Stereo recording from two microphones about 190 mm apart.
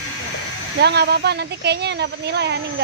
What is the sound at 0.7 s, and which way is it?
Speech, 60° right (ahead or behind).